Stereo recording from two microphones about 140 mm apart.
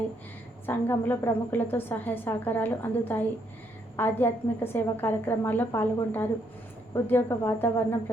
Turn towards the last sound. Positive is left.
turn(degrees=15)  # may be behind; listen again after turning